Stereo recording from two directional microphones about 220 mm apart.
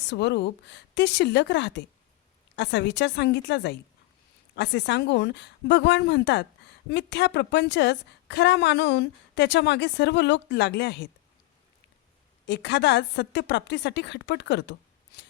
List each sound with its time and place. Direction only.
0.0 s a woman's voice: 50° left (ahead or behind)
12.5 s a woman's voice: 50° left (ahead or behind)